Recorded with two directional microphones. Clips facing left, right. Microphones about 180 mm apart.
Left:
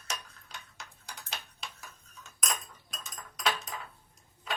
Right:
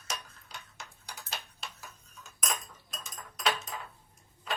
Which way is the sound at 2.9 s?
Centre (ahead or behind).